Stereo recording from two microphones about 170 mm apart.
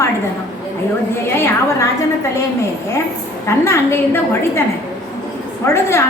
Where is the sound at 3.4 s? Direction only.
15° left (ahead or behind).